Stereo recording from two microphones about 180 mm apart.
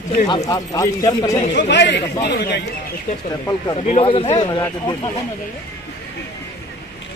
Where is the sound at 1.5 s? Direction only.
75° left (ahead or behind).